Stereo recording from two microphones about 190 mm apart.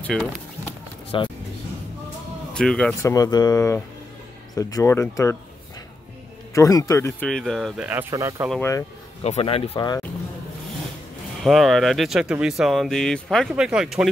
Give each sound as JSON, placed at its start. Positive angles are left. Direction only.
{"t": 0.0, "sound": "speech", "side_deg": 0}
{"t": 1.1, "sound": "speech", "side_deg": 25}
{"t": 2.5, "sound": "speech", "side_deg": 5}
{"t": 3.0, "sound": "speech", "side_deg": 15}
{"t": 6.5, "sound": "speech", "side_deg": 15}
{"t": 7.2, "sound": "speech", "side_deg": 0}
{"t": 8.5, "sound": "speech", "side_deg": 10}
{"t": 9.2, "sound": "speech", "side_deg": 30}
{"t": 11.4, "sound": "speech", "side_deg": 0}